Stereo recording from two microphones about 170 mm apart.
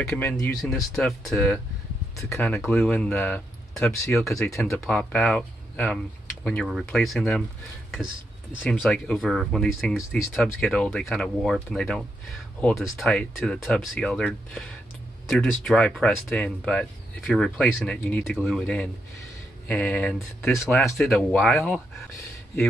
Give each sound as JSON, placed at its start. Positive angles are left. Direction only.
{"t": 0.2, "sound": "speech", "side_deg": 10}
{"t": 2.6, "sound": "speech", "side_deg": 10}
{"t": 8.6, "sound": "speech", "side_deg": 5}
{"t": 21.1, "sound": "speech", "side_deg": 5}